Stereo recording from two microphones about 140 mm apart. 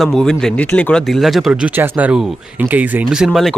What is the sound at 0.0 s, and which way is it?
Speech, 5° left (ahead or behind).